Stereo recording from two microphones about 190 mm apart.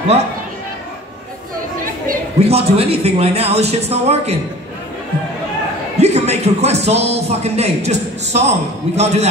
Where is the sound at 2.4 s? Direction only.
30° right (ahead or behind).